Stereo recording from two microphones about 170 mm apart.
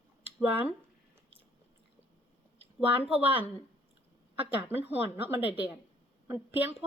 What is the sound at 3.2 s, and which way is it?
A woman's voice, 10° right (ahead or behind).